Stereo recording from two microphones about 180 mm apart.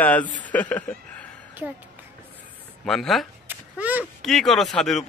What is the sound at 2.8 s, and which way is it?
Speech, centre (ahead or behind).